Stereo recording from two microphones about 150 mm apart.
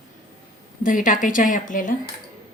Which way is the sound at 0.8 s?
65° left (ahead or behind).